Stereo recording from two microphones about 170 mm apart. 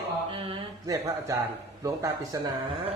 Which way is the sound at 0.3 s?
30° right (ahead or behind).